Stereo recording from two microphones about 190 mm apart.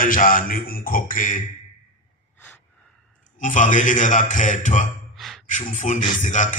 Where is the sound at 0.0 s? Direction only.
45° left (ahead or behind).